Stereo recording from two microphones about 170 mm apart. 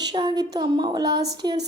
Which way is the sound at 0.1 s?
25° right (ahead or behind).